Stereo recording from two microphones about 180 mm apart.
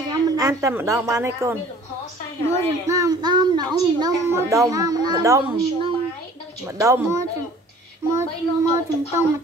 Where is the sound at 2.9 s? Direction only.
20° right (ahead or behind).